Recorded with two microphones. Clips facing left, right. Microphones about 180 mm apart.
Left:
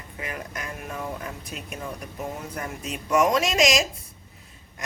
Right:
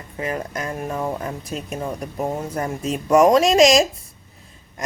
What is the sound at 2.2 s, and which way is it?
Speech, 45° right (ahead or behind).